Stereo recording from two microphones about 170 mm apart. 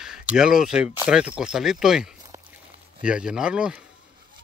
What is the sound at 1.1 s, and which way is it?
Speech, 5° right (ahead or behind).